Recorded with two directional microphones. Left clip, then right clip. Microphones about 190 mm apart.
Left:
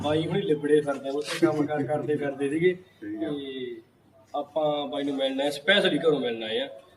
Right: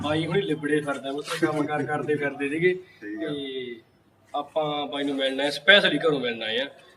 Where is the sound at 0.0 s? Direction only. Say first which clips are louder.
Right 1 dB; 15° left (ahead or behind).